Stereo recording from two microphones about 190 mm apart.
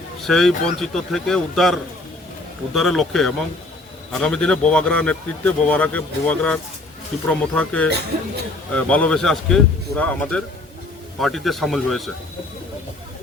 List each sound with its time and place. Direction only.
0.2 s speech: centre (ahead or behind)